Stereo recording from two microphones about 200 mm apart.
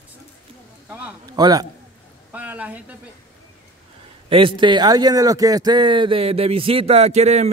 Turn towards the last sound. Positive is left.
turn(degrees=-35)  # may be behind; listen again after turning